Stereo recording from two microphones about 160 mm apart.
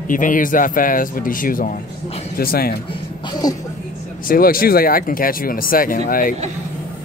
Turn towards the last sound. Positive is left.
turn(degrees=60)  # may be behind; listen again after turning